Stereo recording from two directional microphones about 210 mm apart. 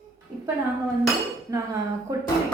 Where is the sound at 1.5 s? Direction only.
15° right (ahead or behind).